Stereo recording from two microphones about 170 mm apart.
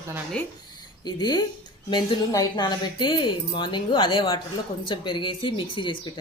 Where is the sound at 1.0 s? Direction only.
25° left (ahead or behind).